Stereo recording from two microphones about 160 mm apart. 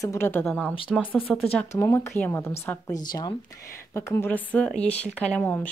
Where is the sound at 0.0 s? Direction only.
15° left (ahead or behind).